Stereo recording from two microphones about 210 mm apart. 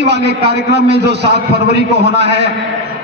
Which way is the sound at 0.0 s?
55° right (ahead or behind).